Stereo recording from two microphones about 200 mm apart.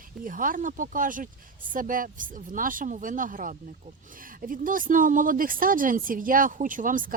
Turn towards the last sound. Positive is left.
turn(degrees=-40)  # may be behind; listen again after turning